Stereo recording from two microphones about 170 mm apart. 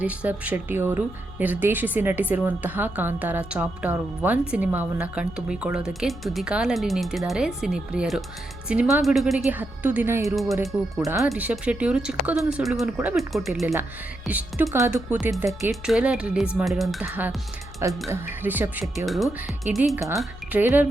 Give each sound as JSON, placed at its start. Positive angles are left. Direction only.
{"t": 0.0, "sound": "speech", "side_deg": -10}
{"t": 10.3, "sound": "speech", "side_deg": 0}
{"t": 14.6, "sound": "speech", "side_deg": -20}
{"t": 15.7, "sound": "speech", "side_deg": -5}
{"t": 19.0, "sound": "speech", "side_deg": 0}
{"t": 19.6, "sound": "speech", "side_deg": -10}